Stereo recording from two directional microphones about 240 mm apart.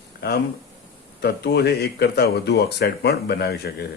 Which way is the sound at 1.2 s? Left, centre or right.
Left.